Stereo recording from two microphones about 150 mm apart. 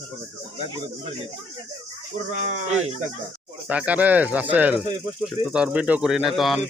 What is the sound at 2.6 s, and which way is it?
Speech, 50° right (ahead or behind).